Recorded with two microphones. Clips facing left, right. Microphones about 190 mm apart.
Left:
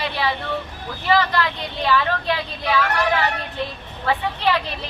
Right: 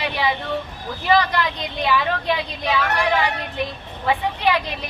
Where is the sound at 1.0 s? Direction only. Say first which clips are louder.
Right 1 dB; 15° right (ahead or behind).